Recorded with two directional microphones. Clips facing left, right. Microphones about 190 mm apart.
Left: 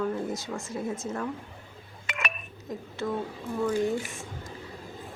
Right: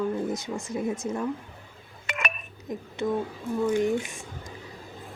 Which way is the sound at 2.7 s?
20° right (ahead or behind).